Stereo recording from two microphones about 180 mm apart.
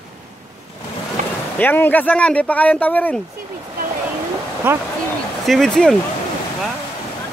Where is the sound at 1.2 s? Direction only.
40° right (ahead or behind).